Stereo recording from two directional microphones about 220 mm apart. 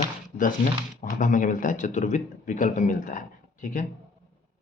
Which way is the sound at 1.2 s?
35° left (ahead or behind).